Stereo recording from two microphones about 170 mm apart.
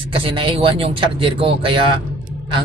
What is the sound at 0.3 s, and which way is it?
Speech, 30° right (ahead or behind).